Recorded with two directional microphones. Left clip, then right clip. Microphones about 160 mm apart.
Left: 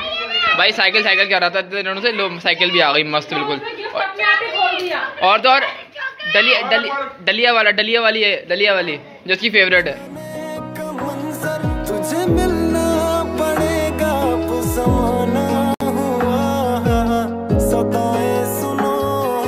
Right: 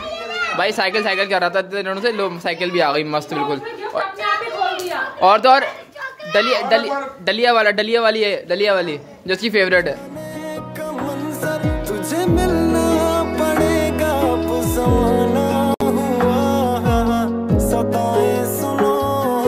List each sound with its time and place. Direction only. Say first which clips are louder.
0.6 s speech: left 1 dB; 30° right (ahead or behind)
5.2 s a woman's voice: right 1 dB; 40° right (ahead or behind)
11.4 s music: right 1 dB; centre (ahead or behind)